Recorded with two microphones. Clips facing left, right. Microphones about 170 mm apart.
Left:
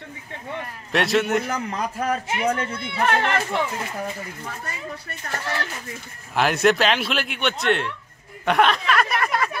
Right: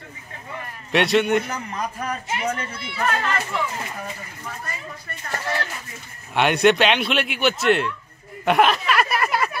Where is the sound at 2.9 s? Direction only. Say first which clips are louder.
Left 3 dB; 75° left (ahead or behind).